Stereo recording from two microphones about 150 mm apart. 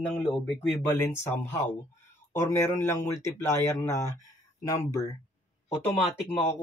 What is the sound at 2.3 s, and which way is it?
Speech, 15° left (ahead or behind).